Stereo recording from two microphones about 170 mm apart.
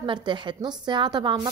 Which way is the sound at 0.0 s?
30° right (ahead or behind).